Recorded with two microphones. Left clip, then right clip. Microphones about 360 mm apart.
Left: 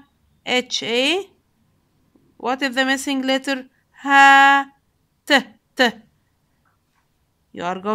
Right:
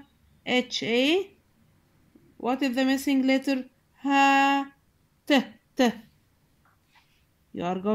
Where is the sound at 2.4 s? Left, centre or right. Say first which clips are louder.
Left 6 dB; left.